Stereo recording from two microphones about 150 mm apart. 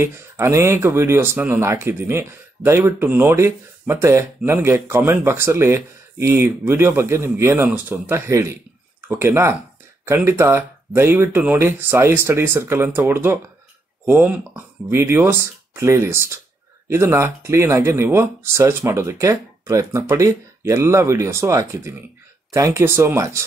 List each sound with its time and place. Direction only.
0.0 s speech: 15° right (ahead or behind)